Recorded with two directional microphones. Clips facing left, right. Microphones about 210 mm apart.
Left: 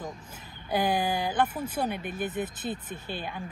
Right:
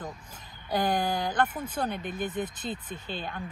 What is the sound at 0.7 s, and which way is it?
Speech, 10° left (ahead or behind).